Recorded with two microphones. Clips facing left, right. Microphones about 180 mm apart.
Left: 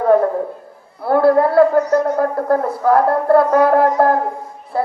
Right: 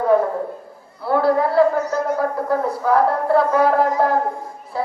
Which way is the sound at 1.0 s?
55° left (ahead or behind).